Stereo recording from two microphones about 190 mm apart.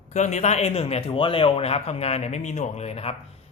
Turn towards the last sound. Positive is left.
turn(degrees=35)  # may be behind; listen again after turning